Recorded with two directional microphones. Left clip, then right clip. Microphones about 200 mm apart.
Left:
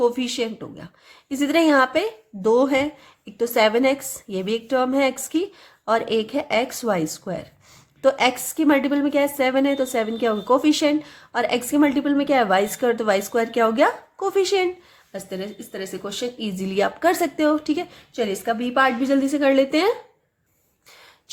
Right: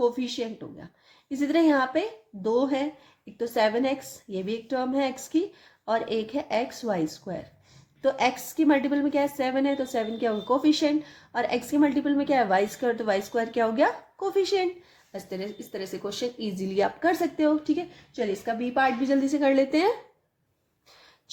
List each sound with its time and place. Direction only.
0.0 s a woman's voice: 30° left (ahead or behind); by 19.9 s 10° left (ahead or behind)